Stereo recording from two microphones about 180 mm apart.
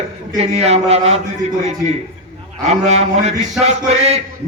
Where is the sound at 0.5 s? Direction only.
35° right (ahead or behind).